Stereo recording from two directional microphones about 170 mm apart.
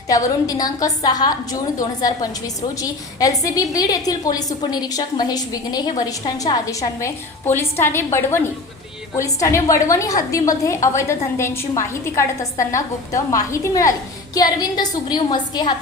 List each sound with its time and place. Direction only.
0.1 s a woman's voice: 20° left (ahead or behind)